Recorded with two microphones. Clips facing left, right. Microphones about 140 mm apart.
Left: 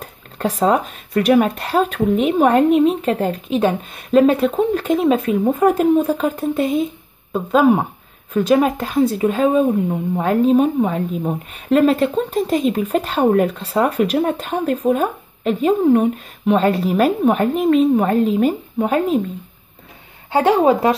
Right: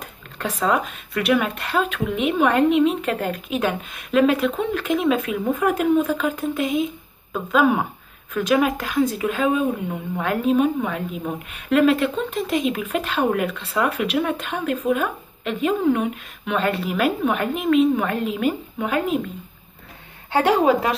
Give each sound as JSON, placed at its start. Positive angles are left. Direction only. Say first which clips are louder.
{"t": 0.0, "sound": "speech", "louder": "left 6 dB", "side_deg": 35}
{"t": 20.2, "sound": "a woman's voice", "louder": "left 3 dB", "side_deg": 20}